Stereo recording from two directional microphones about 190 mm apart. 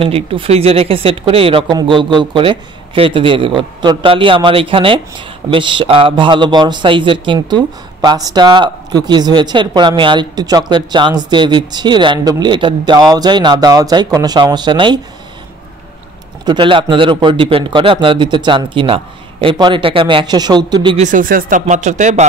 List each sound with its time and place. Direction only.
0.0 s speech: 30° right (ahead or behind)
16.4 s speech: 25° right (ahead or behind)
21.0 s speech: 45° right (ahead or behind)